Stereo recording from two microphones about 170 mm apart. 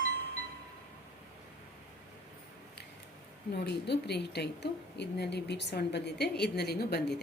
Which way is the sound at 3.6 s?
70° left (ahead or behind).